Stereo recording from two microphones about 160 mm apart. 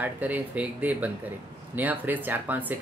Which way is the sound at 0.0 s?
10° right (ahead or behind).